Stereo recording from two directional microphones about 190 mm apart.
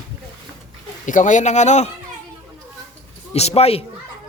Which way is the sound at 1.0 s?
40° left (ahead or behind).